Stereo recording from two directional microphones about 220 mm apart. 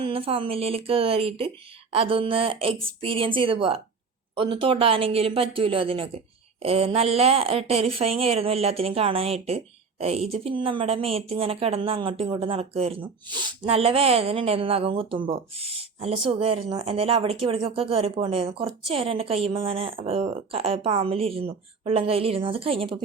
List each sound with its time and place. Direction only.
0.0 s a woman's voice: 25° right (ahead or behind)